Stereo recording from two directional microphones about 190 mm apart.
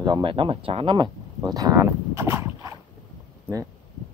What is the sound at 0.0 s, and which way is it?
Speech, 25° right (ahead or behind).